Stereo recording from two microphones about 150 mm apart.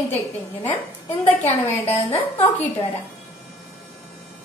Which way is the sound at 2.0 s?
15° left (ahead or behind).